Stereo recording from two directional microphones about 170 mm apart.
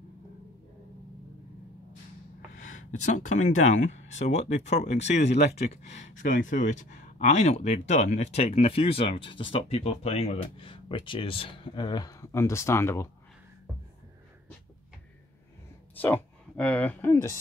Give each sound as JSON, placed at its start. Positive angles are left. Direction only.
{"t": 2.5, "sound": "speech", "side_deg": 45}
{"t": 15.9, "sound": "speech", "side_deg": 10}